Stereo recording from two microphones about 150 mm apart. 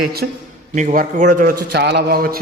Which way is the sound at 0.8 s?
55° right (ahead or behind).